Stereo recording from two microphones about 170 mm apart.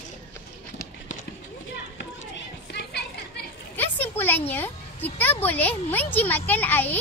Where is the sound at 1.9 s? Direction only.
85° left.